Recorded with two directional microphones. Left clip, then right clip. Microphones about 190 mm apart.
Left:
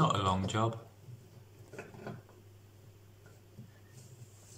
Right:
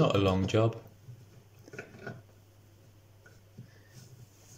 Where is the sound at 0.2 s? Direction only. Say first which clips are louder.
Right 4 dB; 35° right (ahead or behind).